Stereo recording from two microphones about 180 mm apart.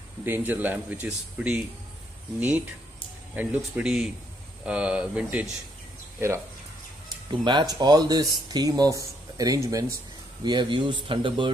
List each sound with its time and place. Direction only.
0.2 s speech: 10° right (ahead or behind)
3.3 s speech: 5° right (ahead or behind)
7.4 s speech: 25° right (ahead or behind)